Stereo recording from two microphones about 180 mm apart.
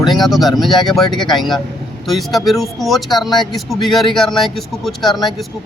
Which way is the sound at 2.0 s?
Centre (ahead or behind).